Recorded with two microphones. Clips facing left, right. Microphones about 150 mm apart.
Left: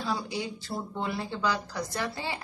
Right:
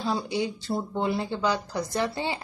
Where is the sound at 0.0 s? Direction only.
25° right (ahead or behind).